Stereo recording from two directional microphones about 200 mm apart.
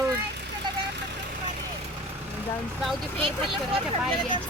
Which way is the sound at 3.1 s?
25° right (ahead or behind).